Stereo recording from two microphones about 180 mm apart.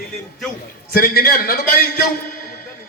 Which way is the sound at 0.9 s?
55° left (ahead or behind).